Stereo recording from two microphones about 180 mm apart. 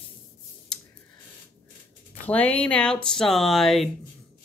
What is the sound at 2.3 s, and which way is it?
Speech, 10° left (ahead or behind).